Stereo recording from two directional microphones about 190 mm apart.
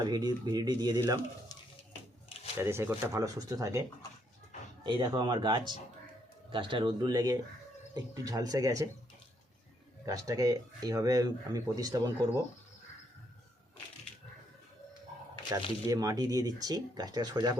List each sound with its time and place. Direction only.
0.0 s speech: 20° right (ahead or behind)
2.6 s speech: 10° right (ahead or behind)
10.1 s speech: 20° right (ahead or behind)
15.5 s speech: 15° right (ahead or behind)